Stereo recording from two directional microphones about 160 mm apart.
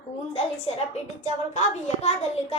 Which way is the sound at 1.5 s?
45° left (ahead or behind).